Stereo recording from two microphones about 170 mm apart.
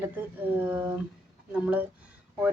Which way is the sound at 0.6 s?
10° right (ahead or behind).